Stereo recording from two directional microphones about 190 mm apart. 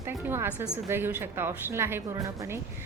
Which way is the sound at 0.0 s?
15° right (ahead or behind).